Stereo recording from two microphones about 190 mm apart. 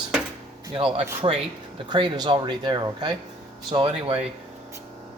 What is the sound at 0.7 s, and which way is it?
Speech, 30° right (ahead or behind).